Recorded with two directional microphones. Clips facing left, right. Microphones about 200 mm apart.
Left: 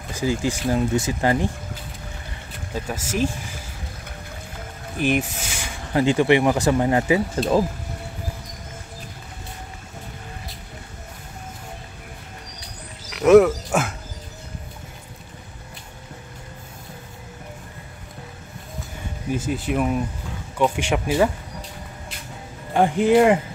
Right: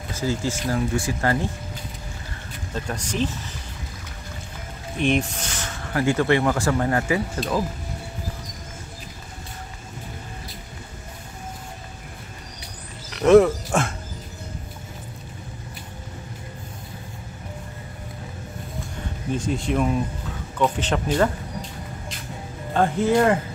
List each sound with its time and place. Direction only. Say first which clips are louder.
0.1 s speech: left 2 dB; 15° left (ahead or behind)
2.7 s speech: left 2 dB; 5° left (ahead or behind)
4.9 s speech: even; 5° left (ahead or behind)
7.3 s speech: left 5 dB; 30° left (ahead or behind)
13.1 s a sound: left 1 dB; 5° left (ahead or behind)
19.3 s speech: even; 5° left (ahead or behind)
22.8 s speech: left 3 dB; 15° left (ahead or behind)